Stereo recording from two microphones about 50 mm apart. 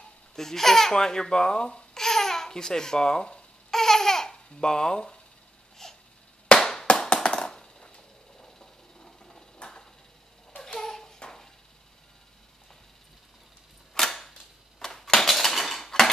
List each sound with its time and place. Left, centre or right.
0.4 s speech: centre
3.7 s babbling: centre
5.8 s a sound: centre
6.5 s clapping: centre
7.2 s a sound: centre
13.9 s camera: centre
14.8 s dishes: centre